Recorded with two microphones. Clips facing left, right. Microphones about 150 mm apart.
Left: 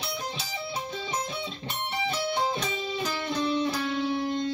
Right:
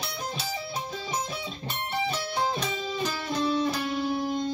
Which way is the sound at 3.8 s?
10° right (ahead or behind).